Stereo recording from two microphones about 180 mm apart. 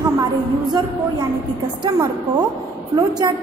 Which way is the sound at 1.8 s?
20° right (ahead or behind).